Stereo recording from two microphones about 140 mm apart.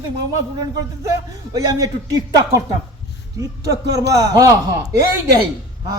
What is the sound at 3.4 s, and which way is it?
Speech, 25° right (ahead or behind).